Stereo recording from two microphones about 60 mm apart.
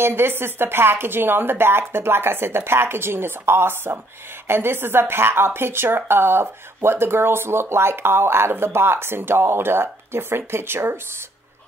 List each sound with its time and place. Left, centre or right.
0.0 s speech: right